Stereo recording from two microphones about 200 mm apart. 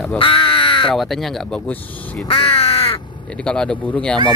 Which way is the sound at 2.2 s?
30° left (ahead or behind).